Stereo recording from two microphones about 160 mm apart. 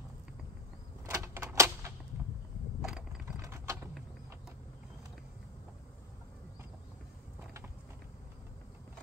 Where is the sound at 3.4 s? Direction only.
20° right (ahead or behind).